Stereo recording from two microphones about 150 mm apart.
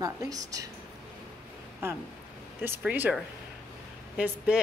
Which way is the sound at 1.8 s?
15° right (ahead or behind).